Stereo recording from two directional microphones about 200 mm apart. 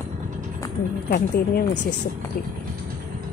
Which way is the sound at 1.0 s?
50° left (ahead or behind).